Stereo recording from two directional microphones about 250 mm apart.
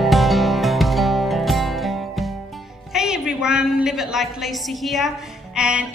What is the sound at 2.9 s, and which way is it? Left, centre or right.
A woman's voice, centre.